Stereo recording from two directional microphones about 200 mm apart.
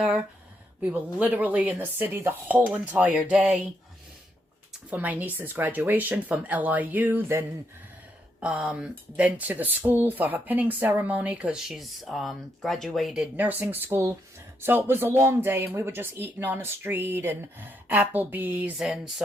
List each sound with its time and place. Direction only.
0.8 s speech: 5° right (ahead or behind)
4.9 s speech: 10° right (ahead or behind)